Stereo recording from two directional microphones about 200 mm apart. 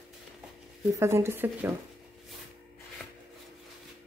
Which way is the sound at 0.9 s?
15° right (ahead or behind).